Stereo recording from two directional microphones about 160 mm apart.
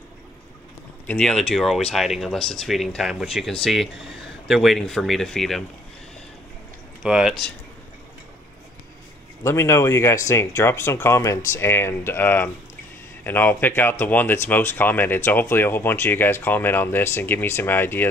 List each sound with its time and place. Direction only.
1.0 s speech: 5° left (ahead or behind)
7.0 s speech: 5° right (ahead or behind)
9.4 s speech: 15° left (ahead or behind)